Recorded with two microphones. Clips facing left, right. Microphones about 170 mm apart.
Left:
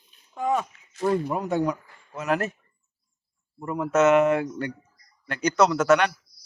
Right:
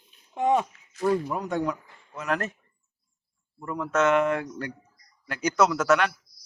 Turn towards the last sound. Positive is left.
turn(degrees=0)  # may be behind; listen again after turning